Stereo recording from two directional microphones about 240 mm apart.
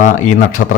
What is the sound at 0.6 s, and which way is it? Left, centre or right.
Speech, left.